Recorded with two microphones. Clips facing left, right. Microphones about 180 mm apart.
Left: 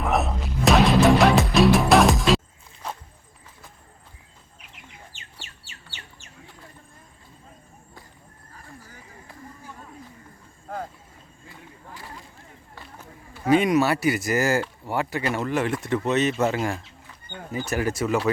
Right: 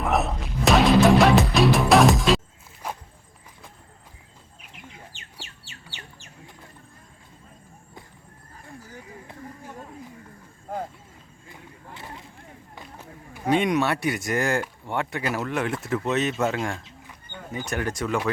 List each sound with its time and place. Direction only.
0.0 s music: centre (ahead or behind)
2.8 s walk: 10° right (ahead or behind)
11.9 s a sound: 25° right (ahead or behind)
13.4 s speech: centre (ahead or behind)